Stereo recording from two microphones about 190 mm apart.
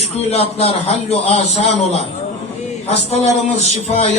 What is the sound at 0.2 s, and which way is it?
A man's voice, 30° left (ahead or behind).